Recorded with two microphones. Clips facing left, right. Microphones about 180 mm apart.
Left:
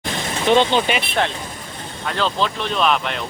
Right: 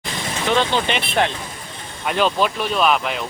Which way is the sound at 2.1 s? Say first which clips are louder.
Right 3 dB; 15° right (ahead or behind).